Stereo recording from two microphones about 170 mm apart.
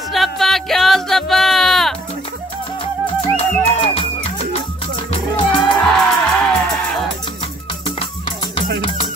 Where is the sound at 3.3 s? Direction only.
30° left (ahead or behind).